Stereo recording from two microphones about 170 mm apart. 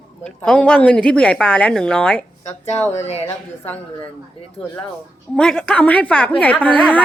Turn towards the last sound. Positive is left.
turn(degrees=10)  # may be behind; listen again after turning